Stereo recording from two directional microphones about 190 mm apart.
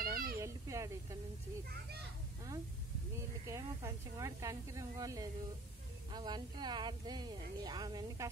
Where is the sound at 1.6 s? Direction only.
55° right (ahead or behind).